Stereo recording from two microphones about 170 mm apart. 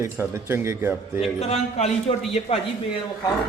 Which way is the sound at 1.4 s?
40° left (ahead or behind).